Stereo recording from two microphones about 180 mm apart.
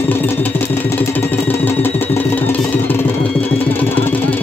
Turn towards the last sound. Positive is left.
turn(degrees=10)  # may be behind; listen again after turning